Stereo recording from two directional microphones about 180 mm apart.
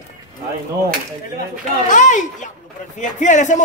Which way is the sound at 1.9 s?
45° left (ahead or behind).